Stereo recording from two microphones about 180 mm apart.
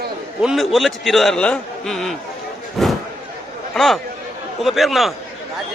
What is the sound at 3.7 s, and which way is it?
A man's voice, centre (ahead or behind).